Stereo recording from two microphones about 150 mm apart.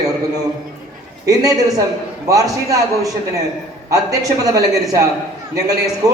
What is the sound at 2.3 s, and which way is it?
A man's voice, 20° right (ahead or behind).